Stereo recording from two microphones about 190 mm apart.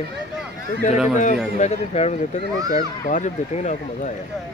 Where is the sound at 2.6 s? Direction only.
20° right (ahead or behind).